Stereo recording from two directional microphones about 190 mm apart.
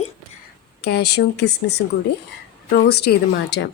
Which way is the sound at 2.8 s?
60° left (ahead or behind).